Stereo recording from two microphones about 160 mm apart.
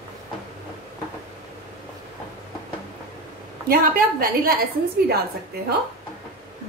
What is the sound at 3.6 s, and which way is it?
Speech, 65° right (ahead or behind).